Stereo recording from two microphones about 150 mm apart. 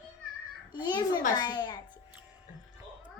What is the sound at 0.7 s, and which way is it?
A child's voice, 30° left (ahead or behind).